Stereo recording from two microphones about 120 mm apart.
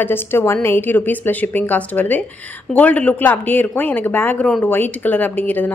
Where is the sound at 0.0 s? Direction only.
15° left (ahead or behind).